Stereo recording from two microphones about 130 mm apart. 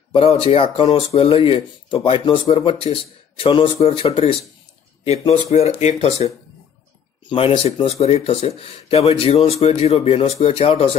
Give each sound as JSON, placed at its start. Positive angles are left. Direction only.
{"t": 0.1, "sound": "speech", "side_deg": 45}